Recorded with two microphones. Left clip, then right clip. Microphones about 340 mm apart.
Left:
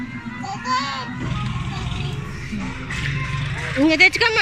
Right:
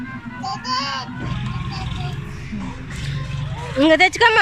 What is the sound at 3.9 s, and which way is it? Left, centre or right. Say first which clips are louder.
Speech: right 2 dB; centre.